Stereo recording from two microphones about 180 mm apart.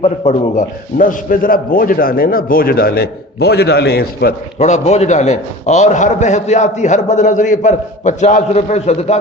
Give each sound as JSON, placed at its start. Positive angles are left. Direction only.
{"t": 0.0, "sound": "a man's voice", "side_deg": 40}
{"t": 4.5, "sound": "a man's voice", "side_deg": 40}